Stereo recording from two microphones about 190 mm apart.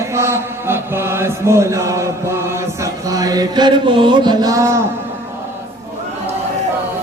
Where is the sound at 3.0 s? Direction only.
20° right (ahead or behind).